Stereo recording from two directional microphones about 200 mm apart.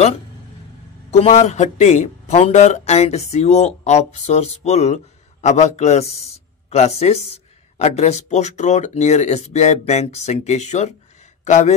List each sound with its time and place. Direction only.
1.1 s speech: 35° left (ahead or behind)